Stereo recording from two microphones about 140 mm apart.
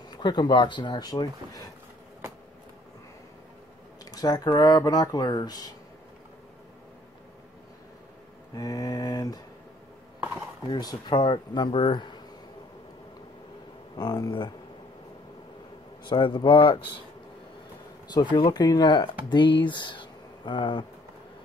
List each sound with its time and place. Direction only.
0.1 s speech: 30° left (ahead or behind)
4.0 s speech: 25° left (ahead or behind)
8.5 s speech: 25° left (ahead or behind)
10.7 s speech: 30° left (ahead or behind)
13.9 s speech: 30° left (ahead or behind)
16.1 s speech: 35° left (ahead or behind)
18.1 s speech: 35° left (ahead or behind)